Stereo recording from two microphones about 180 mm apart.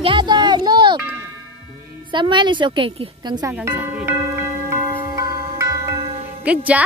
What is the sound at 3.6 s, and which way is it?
Music, 10° right (ahead or behind).